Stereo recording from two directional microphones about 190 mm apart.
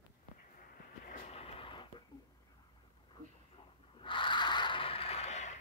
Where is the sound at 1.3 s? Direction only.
30° left (ahead or behind).